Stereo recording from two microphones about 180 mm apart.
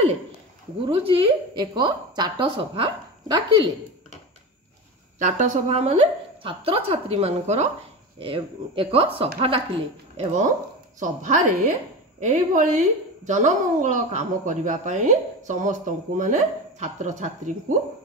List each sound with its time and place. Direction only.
0.8 s a woman's voice: 30° right (ahead or behind)
5.2 s a woman's voice: 40° right (ahead or behind)
10.1 s a woman's voice: 40° right (ahead or behind)